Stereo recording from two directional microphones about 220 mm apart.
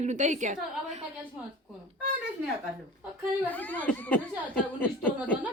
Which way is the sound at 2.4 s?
10° right (ahead or behind).